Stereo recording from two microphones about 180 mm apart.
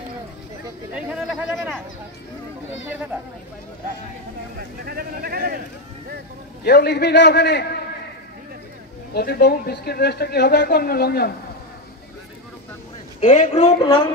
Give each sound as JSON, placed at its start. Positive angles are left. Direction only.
{"t": 0.9, "sound": "chatter", "side_deg": -5}
{"t": 4.8, "sound": "a sound", "side_deg": -55}
{"t": 6.6, "sound": "a man's voice", "side_deg": 65}
{"t": 9.1, "sound": "speech", "side_deg": 60}
{"t": 13.2, "sound": "speech", "side_deg": 40}